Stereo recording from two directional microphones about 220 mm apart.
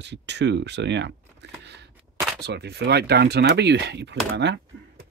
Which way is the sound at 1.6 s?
50° right (ahead or behind).